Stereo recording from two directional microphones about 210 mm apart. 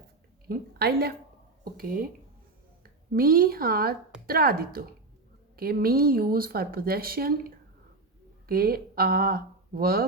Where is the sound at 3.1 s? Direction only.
45° right (ahead or behind).